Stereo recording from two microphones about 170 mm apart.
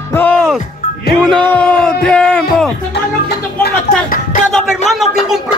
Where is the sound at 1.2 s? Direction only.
5° left (ahead or behind).